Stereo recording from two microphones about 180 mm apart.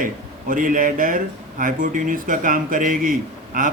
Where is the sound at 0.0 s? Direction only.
50° right (ahead or behind).